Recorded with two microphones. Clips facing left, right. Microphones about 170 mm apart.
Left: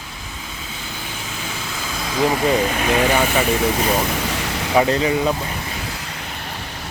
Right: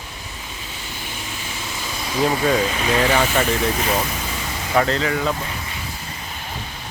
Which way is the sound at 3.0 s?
10° left (ahead or behind).